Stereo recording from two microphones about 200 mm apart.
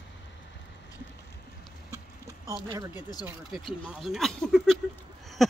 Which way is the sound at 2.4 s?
20° right (ahead or behind).